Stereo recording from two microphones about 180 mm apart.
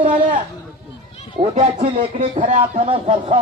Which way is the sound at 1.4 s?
30° right (ahead or behind).